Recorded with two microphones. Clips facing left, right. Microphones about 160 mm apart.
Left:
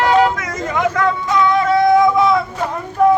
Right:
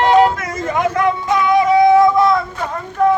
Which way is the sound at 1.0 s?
20° right (ahead or behind).